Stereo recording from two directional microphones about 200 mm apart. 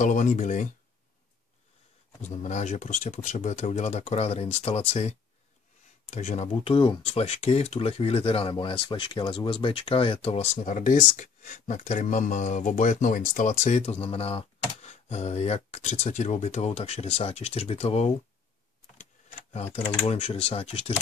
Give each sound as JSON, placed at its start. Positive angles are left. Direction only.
{"t": 0.0, "sound": "speech", "side_deg": 40}
{"t": 2.2, "sound": "speech", "side_deg": 35}
{"t": 19.5, "sound": "speech", "side_deg": 30}